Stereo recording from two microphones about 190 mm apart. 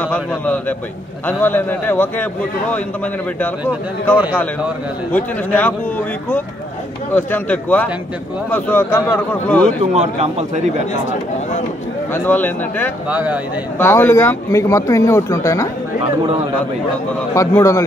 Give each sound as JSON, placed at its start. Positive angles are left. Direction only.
{"t": 1.2, "sound": "speech", "side_deg": 10}
{"t": 5.1, "sound": "speech", "side_deg": 10}
{"t": 7.2, "sound": "speech", "side_deg": 10}
{"t": 9.9, "sound": "a man's voice", "side_deg": -35}
{"t": 12.1, "sound": "speech", "side_deg": 10}
{"t": 13.1, "sound": "speech", "side_deg": -10}
{"t": 13.7, "sound": "speech", "side_deg": 10}
{"t": 17.3, "sound": "speech", "side_deg": 15}